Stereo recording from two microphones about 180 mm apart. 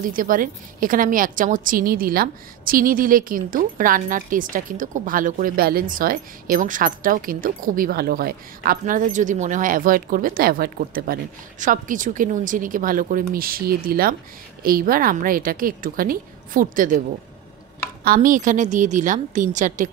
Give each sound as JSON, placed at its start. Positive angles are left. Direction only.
{"t": 0.0, "sound": "a woman's voice", "side_deg": -50}
{"t": 18.0, "sound": "a woman's voice", "side_deg": -50}